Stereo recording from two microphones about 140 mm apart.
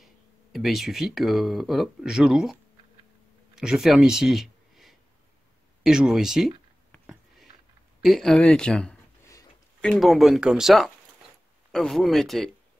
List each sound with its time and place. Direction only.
0.0 s speech: centre (ahead or behind)
3.5 s speech: 5° right (ahead or behind)
6.9 s a sound: centre (ahead or behind)
8.0 s speech: centre (ahead or behind)
9.2 s a sound: 25° left (ahead or behind)
9.8 s speech: 5° left (ahead or behind)